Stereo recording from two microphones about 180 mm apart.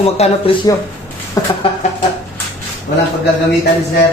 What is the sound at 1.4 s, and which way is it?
Speech, 20° left (ahead or behind).